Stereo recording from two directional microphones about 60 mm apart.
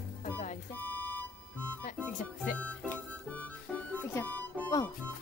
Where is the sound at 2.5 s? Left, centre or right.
Left.